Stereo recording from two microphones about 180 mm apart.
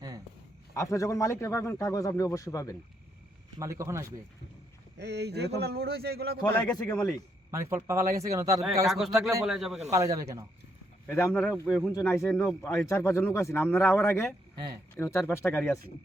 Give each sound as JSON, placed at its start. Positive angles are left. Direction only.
{"t": 0.7, "sound": "a man's voice", "side_deg": 15}
{"t": 3.6, "sound": "speech", "side_deg": -15}
{"t": 4.9, "sound": "a man's voice", "side_deg": -70}
{"t": 6.4, "sound": "a man's voice", "side_deg": 20}
{"t": 6.8, "sound": "speech", "side_deg": 5}
{"t": 7.5, "sound": "speech", "side_deg": -15}
{"t": 8.9, "sound": "speech", "side_deg": 0}
{"t": 9.9, "sound": "speech", "side_deg": -20}
{"t": 11.1, "sound": "a man's voice", "side_deg": 10}